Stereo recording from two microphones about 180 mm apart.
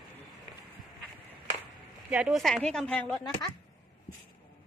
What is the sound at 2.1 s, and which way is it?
A woman's voice, centre (ahead or behind).